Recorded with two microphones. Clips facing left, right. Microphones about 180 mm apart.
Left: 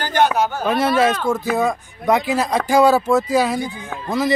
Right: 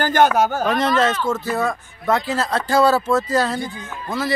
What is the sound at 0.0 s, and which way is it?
Speech, 50° right (ahead or behind).